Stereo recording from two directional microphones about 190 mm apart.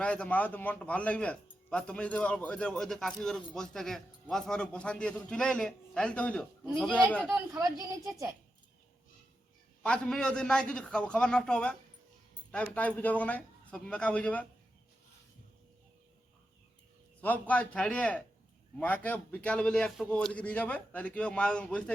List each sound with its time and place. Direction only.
0.0 s speech: 5° left (ahead or behind)
7.3 s a woman's voice: 15° right (ahead or behind)
9.8 s a man's voice: 5° left (ahead or behind)
17.2 s a man's voice: 10° left (ahead or behind)